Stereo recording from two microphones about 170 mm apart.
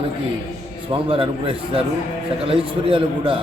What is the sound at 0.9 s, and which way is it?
A man's voice, 30° right (ahead or behind).